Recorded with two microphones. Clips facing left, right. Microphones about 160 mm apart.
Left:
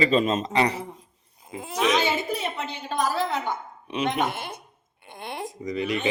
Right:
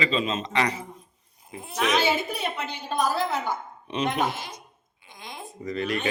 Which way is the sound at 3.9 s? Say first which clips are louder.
Even; 10° left (ahead or behind).